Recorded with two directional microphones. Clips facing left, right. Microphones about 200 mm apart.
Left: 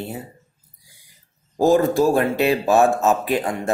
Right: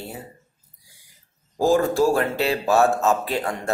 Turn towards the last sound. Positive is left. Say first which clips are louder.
# left 3 dB
turn(degrees=15)  # may be behind; listen again after turning